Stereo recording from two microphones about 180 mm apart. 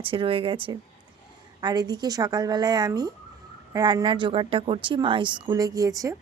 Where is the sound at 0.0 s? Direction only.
30° right (ahead or behind).